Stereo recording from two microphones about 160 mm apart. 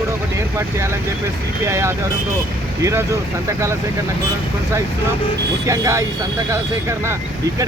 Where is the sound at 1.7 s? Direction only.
15° right (ahead or behind).